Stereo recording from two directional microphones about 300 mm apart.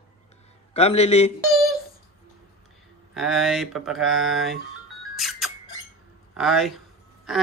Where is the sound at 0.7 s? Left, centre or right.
Left.